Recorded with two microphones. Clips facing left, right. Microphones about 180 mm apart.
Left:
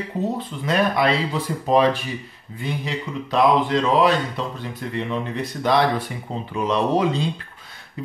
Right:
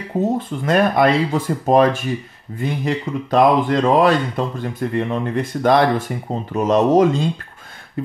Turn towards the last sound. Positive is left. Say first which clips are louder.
# right 6 dB
turn(degrees=-45)  # may be behind; listen again after turning